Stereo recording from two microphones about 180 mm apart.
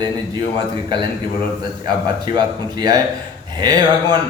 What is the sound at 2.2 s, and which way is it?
A man's voice, 20° right (ahead or behind).